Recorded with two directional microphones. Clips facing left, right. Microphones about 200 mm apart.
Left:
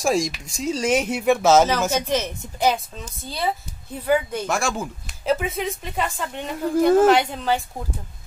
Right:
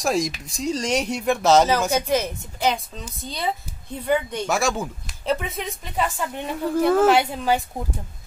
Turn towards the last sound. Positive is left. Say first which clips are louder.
# right 1 dB
turn(degrees=-10)  # may be behind; listen again after turning